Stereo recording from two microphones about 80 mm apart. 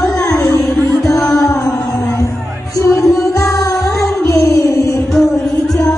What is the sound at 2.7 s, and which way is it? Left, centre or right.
Music, left.